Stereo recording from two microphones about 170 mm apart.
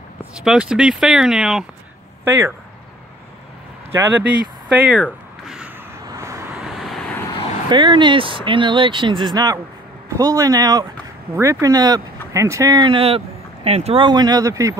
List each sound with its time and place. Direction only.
0.2 s speech: 5° right (ahead or behind)
2.2 s speech: 15° right (ahead or behind)
3.9 s speech: 15° right (ahead or behind)
6.0 s vehicle: 20° right (ahead or behind)
6.6 s vehicle: centre (ahead or behind)
7.2 s vehicle: 30° left (ahead or behind)
7.7 s speech: 25° right (ahead or behind)